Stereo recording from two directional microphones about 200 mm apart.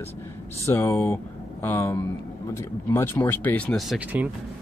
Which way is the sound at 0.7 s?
10° left (ahead or behind).